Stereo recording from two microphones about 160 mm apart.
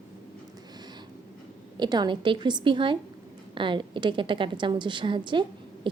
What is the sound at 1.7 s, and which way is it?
A woman's voice, 25° right (ahead or behind).